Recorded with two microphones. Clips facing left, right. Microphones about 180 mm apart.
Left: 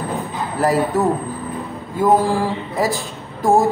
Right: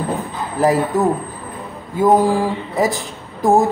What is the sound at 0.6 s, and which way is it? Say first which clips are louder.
Speech: right 2 dB; 15° right (ahead or behind).